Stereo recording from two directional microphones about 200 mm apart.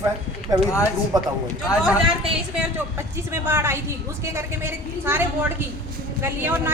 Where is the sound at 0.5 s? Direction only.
15° right (ahead or behind).